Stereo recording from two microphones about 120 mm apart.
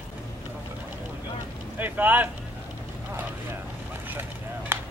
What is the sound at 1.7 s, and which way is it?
Vehicle, 15° right (ahead or behind).